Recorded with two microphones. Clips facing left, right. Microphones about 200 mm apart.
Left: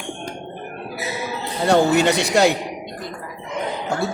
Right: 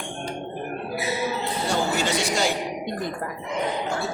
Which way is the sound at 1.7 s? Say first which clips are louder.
Left 10 dB; 65° left (ahead or behind).